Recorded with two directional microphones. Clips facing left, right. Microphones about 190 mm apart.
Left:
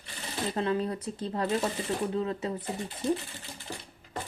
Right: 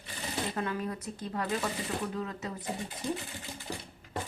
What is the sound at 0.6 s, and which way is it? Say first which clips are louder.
Speech: left 5 dB; 30° left (ahead or behind).